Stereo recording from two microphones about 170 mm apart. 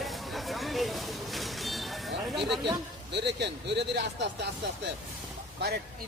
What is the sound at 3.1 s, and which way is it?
Speech, 90° right.